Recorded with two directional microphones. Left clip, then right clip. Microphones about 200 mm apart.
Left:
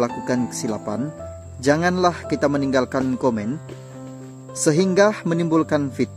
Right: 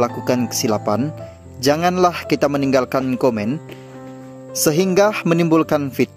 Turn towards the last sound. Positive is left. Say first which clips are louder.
# right 3 dB
turn(degrees=-15)  # may be behind; listen again after turning